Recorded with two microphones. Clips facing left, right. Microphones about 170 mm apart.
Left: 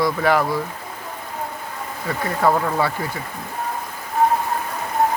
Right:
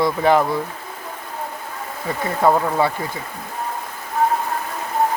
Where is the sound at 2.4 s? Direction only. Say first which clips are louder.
Right 2 dB; 20° right (ahead or behind).